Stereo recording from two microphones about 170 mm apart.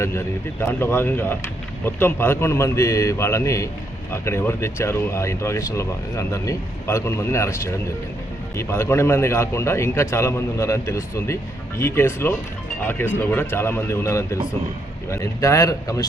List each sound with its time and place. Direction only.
0.6 s speech: 15° left (ahead or behind)